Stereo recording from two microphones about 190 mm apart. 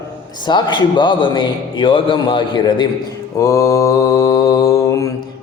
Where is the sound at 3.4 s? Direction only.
15° left (ahead or behind).